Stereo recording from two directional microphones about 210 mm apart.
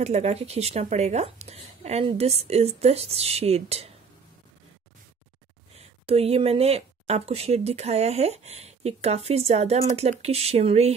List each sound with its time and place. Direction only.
0.0 s speech: 30° right (ahead or behind)
5.8 s speech: 30° right (ahead or behind)